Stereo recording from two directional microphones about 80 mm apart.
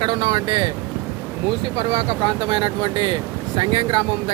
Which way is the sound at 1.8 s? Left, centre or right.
Right.